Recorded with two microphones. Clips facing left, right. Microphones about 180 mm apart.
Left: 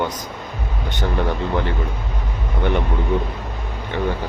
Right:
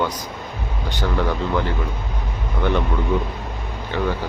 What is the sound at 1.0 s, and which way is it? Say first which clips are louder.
Speech: even; 25° left (ahead or behind).